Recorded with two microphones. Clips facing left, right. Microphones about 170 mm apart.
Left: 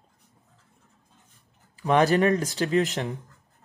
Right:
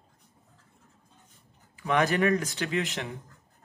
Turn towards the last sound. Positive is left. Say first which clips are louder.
# left 6 dB
turn(degrees=40)  # may be behind; listen again after turning